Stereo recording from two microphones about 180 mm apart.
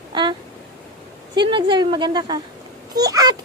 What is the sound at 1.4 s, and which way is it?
A woman's voice, 25° right (ahead or behind).